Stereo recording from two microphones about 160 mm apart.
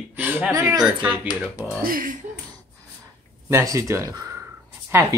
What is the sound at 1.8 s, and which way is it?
Speech, 60° right (ahead or behind).